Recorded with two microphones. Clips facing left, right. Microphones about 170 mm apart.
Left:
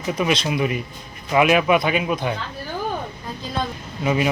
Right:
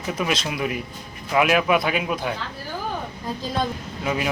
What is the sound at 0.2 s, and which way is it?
A man's voice, centre (ahead or behind).